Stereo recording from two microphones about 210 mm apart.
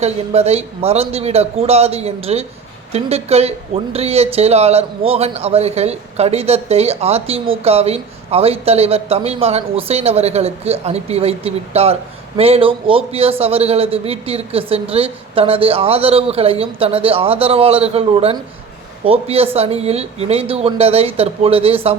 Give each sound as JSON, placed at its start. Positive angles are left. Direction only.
{"t": 0.0, "sound": "a man's voice", "side_deg": -30}